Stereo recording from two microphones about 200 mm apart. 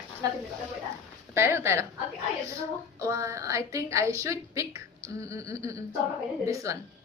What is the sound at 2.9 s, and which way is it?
Speech, 15° right (ahead or behind).